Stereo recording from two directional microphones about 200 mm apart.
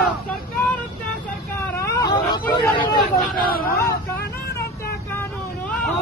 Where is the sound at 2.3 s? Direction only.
20° left (ahead or behind).